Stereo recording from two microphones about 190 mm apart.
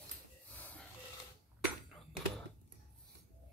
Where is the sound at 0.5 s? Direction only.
10° left (ahead or behind).